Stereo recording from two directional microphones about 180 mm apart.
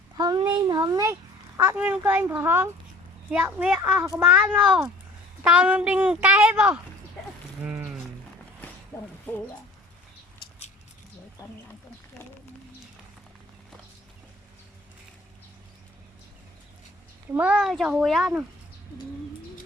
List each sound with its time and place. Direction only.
0.2 s a child's voice: 25° right (ahead or behind); by 7.9 s 5° right (ahead or behind)
8.9 s a sound: 15° left (ahead or behind)
17.3 s a child's voice: 5° right (ahead or behind)